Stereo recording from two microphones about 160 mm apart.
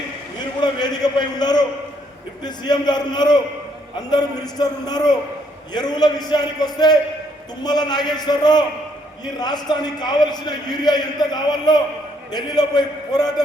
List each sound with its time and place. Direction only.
0.3 s a man's voice: 25° left (ahead or behind)